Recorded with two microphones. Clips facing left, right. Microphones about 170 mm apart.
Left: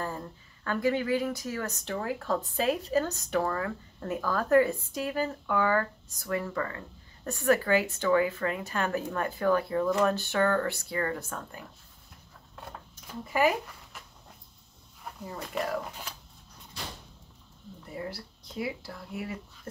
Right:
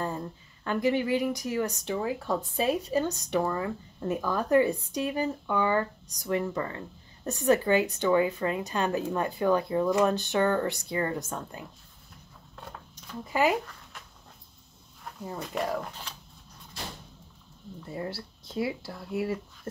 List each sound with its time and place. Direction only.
0.0 s a woman's voice: 20° right (ahead or behind)
13.2 s a woman's voice: 20° right (ahead or behind)
15.3 s speech: centre (ahead or behind)
17.8 s a woman's voice: 30° right (ahead or behind)